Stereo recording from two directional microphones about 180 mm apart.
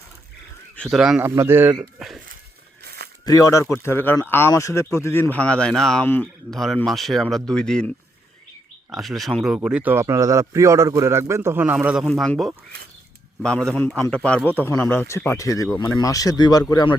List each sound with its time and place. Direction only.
0.8 s speech: centre (ahead or behind)
1.7 s speech: centre (ahead or behind)
2.8 s a sound: 60° right (ahead or behind)
3.2 s speech: 20° left (ahead or behind); by 7.9 s 5° left (ahead or behind)
8.9 s speech: centre (ahead or behind)
12.0 s speech: 5° left (ahead or behind); by 17.0 s 25° left (ahead or behind)